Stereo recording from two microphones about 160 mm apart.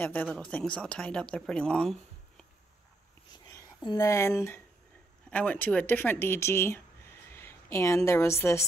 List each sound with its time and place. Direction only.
0.0 s speech: 10° left (ahead or behind)
3.4 s a sound: 20° left (ahead or behind)
5.3 s speech: 10° left (ahead or behind)